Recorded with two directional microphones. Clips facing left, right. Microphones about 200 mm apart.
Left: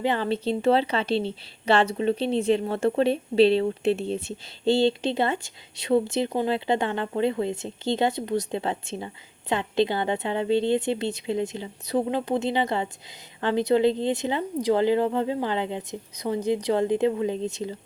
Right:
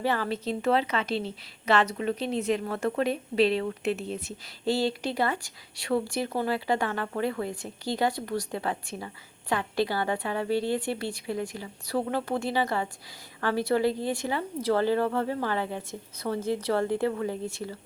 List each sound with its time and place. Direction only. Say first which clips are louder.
0.0 s a woman's voice: left 4 dB; 25° left (ahead or behind)